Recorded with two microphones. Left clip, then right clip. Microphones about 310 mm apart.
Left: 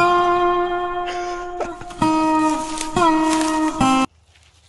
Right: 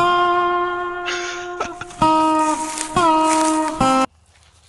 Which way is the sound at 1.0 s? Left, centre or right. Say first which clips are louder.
Even; centre.